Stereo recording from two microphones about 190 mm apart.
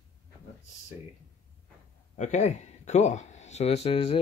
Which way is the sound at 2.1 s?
40° left (ahead or behind).